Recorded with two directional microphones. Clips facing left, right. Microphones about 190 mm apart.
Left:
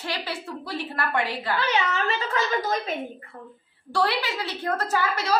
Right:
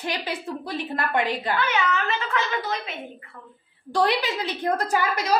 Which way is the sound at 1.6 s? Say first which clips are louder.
Left 2 dB; 35° left (ahead or behind).